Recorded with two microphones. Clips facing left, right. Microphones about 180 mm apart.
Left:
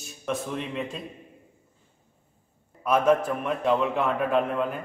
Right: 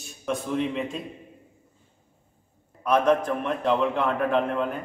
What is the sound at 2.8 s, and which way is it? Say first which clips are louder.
A man's voice: even; 5° left (ahead or behind).